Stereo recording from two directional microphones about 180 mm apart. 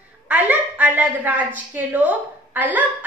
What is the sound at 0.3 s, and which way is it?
A woman's voice, 10° right (ahead or behind).